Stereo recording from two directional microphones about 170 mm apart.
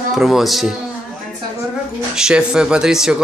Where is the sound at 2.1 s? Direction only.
5° right (ahead or behind).